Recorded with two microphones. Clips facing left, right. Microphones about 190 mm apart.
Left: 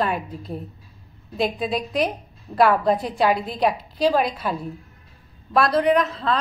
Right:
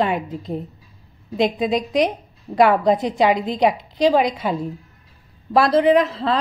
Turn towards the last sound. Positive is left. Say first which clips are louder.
# right 3 dB
turn(degrees=-30)  # may be behind; listen again after turning